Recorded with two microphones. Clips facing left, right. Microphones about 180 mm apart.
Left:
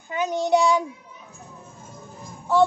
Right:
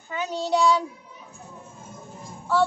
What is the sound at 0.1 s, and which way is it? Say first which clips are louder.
Speech: left 4 dB; 15° left (ahead or behind).